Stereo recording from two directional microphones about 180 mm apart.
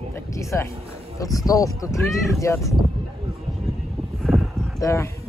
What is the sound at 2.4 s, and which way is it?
Speech, 15° left (ahead or behind).